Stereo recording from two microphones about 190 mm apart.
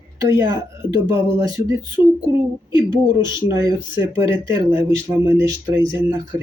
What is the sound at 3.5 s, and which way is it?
Speech, 15° right (ahead or behind).